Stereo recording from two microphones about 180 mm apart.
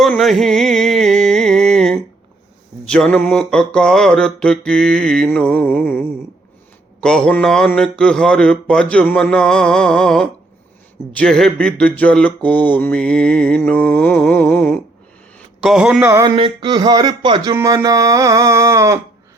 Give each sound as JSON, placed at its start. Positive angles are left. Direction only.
{"t": 0.0, "sound": "music", "side_deg": 0}
{"t": 2.8, "sound": "speech", "side_deg": 5}
{"t": 11.2, "sound": "mantra", "side_deg": 5}
{"t": 15.6, "sound": "speech", "side_deg": -5}
{"t": 16.3, "sound": "speech", "side_deg": -30}